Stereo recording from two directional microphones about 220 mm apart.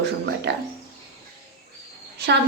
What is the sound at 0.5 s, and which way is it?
Speech, 50° right (ahead or behind).